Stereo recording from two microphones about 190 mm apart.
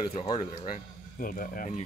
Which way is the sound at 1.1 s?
45° left (ahead or behind).